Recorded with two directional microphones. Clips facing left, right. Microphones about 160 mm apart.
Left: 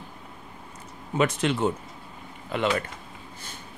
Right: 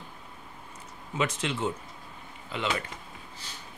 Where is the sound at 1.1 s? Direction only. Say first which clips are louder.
Left 6 dB; 55° left (ahead or behind).